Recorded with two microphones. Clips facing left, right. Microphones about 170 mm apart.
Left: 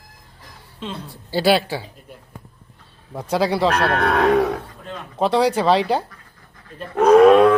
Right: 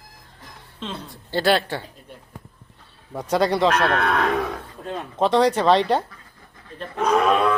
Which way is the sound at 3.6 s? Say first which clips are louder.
Left 1 dB; 30° left (ahead or behind).